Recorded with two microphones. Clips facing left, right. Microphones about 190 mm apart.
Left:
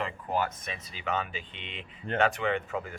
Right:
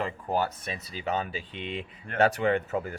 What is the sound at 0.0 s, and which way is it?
Speech, 35° right (ahead or behind).